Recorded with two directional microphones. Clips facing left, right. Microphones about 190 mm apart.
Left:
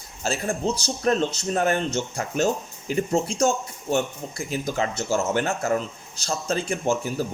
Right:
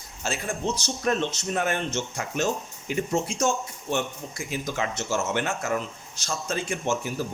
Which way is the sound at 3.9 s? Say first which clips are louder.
Left 4 dB; 35° left (ahead or behind).